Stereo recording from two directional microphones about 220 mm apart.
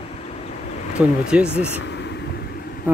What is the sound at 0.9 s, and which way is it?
Speech, 5° right (ahead or behind).